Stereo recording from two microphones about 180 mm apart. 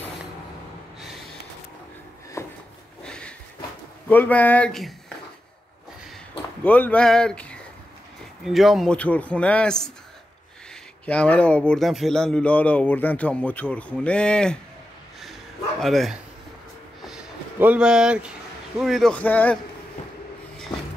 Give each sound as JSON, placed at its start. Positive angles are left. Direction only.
{"t": 2.4, "sound": "a sound", "side_deg": 15}
{"t": 4.1, "sound": "speech", "side_deg": 10}
{"t": 6.6, "sound": "speech", "side_deg": 10}
{"t": 11.1, "sound": "speech", "side_deg": 5}
{"t": 15.8, "sound": "a man's voice", "side_deg": 0}
{"t": 17.0, "sound": "a sound", "side_deg": -5}
{"t": 18.8, "sound": "a man's voice", "side_deg": 0}